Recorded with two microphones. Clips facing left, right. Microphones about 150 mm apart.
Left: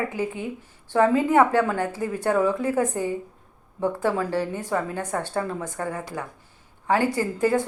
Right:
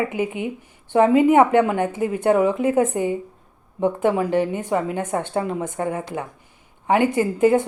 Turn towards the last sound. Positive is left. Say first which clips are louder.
# right 5 dB
turn(degrees=-20)  # may be behind; listen again after turning